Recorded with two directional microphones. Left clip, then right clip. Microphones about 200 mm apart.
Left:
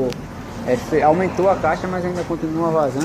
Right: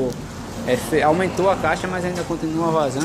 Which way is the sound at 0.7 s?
5° right (ahead or behind).